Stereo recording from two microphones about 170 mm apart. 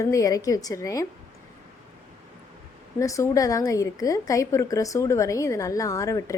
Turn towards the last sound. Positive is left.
turn(degrees=20)  # may be behind; listen again after turning